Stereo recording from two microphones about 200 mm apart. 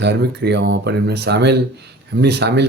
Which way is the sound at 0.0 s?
60° right (ahead or behind).